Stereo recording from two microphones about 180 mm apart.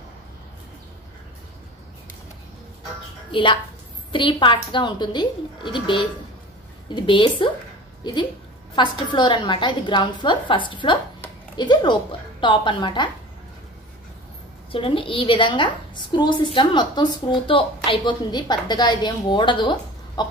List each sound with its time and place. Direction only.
3.3 s a woman's voice: 25° left (ahead or behind)
14.7 s a woman's voice: 30° left (ahead or behind)